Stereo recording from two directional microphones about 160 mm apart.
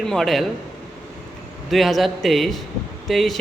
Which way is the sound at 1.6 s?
Centre (ahead or behind).